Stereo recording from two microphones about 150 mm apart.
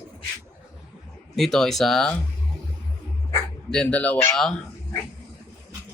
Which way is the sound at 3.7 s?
5° left (ahead or behind).